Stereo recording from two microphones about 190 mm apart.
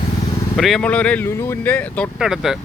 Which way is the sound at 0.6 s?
Centre (ahead or behind).